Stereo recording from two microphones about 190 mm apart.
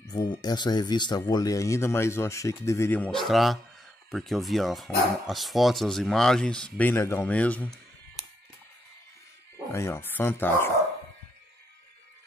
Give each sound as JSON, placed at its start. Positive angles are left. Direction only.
{"t": 0.0, "sound": "speech", "side_deg": 20}
{"t": 9.7, "sound": "speech", "side_deg": 15}